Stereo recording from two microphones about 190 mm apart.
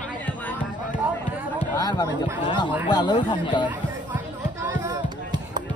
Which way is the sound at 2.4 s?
25° left (ahead or behind).